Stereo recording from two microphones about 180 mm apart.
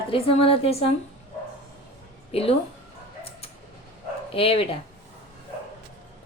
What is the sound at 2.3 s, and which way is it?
Speech, 30° left (ahead or behind).